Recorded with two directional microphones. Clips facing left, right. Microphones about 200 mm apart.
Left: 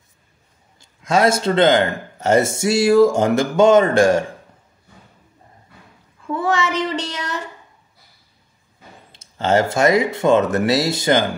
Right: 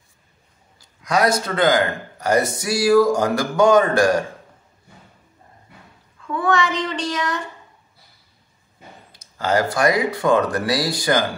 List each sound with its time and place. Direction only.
0.7 s a man's voice: 25° left (ahead or behind)
6.3 s a man's voice: 25° left (ahead or behind)
9.1 s a man's voice: 25° left (ahead or behind)